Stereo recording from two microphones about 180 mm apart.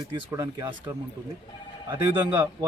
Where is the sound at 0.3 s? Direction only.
20° right (ahead or behind).